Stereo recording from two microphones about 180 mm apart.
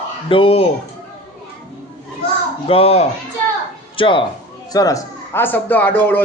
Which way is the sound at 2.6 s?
30° left (ahead or behind).